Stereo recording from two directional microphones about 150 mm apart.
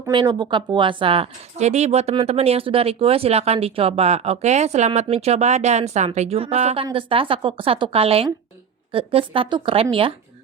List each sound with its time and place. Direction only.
0.1 s a woman's voice: 30° right (ahead or behind)